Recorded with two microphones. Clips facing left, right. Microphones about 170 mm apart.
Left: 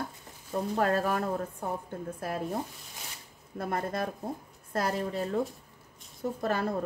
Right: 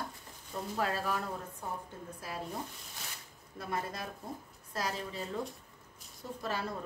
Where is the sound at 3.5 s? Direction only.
50° left (ahead or behind).